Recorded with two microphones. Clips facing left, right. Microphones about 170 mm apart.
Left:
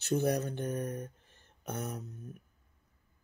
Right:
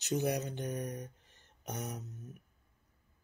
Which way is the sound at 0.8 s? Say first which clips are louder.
Left 3 dB; 55° left (ahead or behind).